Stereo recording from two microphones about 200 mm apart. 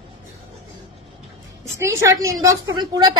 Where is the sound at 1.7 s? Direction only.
15° right (ahead or behind).